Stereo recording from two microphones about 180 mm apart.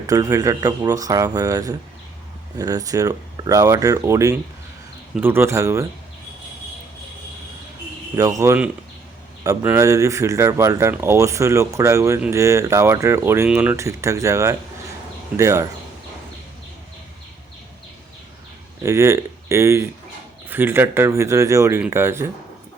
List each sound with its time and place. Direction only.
0.1 s speech: 20° right (ahead or behind)
8.1 s speech: 20° right (ahead or behind)
18.8 s speech: 15° right (ahead or behind)